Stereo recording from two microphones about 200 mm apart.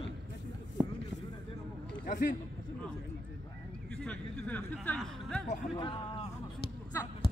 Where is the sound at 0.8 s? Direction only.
10° right (ahead or behind).